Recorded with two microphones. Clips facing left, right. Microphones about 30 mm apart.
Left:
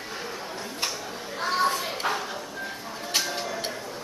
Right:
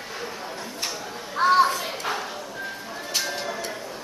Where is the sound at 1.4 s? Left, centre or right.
Right.